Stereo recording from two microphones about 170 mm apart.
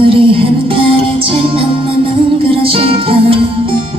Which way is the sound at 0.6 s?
30° right (ahead or behind).